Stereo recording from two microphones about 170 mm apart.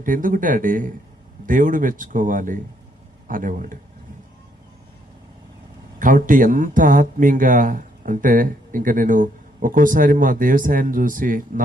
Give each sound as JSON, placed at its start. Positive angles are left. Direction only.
{"t": 0.0, "sound": "speech", "side_deg": -50}
{"t": 6.0, "sound": "speech", "side_deg": -50}